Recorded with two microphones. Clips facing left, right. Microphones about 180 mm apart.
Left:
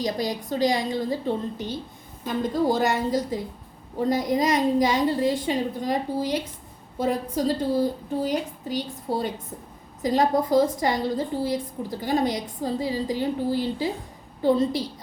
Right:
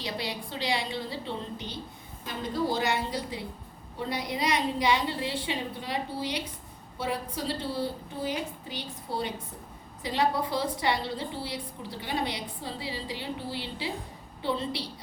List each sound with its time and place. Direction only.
0.0 s a woman's voice: 45° left (ahead or behind)